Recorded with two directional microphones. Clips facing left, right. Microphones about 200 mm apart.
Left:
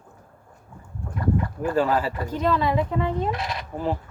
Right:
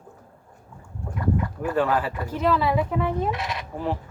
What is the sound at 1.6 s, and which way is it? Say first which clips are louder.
A woman's voice: left 1 dB; centre (ahead or behind).